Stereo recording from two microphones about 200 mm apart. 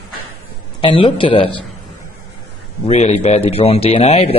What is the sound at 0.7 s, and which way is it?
Speech, 25° left (ahead or behind).